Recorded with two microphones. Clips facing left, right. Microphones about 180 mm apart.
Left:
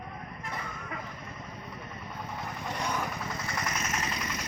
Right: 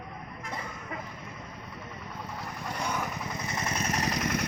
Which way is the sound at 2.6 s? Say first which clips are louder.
Even; 5° right (ahead or behind).